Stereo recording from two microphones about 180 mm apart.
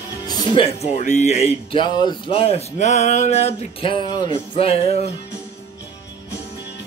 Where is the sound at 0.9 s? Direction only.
40° left (ahead or behind).